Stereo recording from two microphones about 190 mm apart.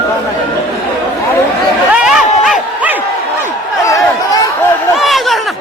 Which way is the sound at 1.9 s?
5° right (ahead or behind).